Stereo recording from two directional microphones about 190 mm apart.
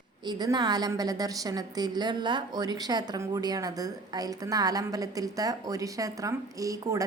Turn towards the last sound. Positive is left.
turn(degrees=-20)  # may be behind; listen again after turning